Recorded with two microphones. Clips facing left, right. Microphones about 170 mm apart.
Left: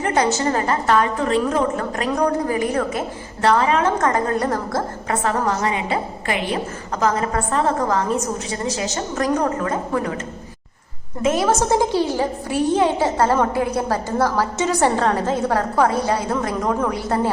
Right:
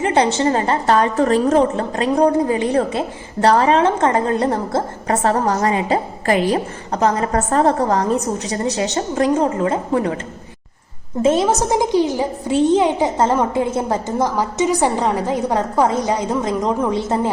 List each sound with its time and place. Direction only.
0.0 s a woman's voice: 30° right (ahead or behind)
11.2 s a woman's voice: 30° right (ahead or behind)
11.4 s a woman's voice: 15° right (ahead or behind)